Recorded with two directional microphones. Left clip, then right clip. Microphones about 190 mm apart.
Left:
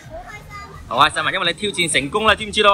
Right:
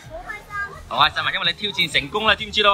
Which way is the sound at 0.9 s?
Centre (ahead or behind).